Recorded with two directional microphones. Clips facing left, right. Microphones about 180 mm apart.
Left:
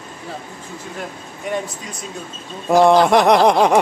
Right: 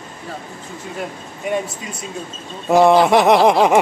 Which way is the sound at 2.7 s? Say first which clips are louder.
Even; centre (ahead or behind).